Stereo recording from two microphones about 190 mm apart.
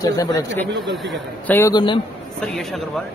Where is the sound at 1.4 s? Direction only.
10° left (ahead or behind).